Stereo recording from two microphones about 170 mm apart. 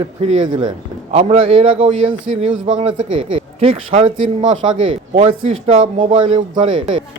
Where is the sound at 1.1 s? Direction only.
35° right (ahead or behind).